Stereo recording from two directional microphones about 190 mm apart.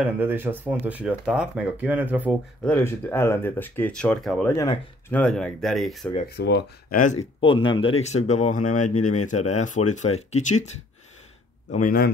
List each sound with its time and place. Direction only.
0.0 s speech: 10° right (ahead or behind)
2.6 s speech: 10° left (ahead or behind)
6.2 s speech: 60° left (ahead or behind)
7.0 s speech: 35° left (ahead or behind)
11.7 s speech: 50° left (ahead or behind)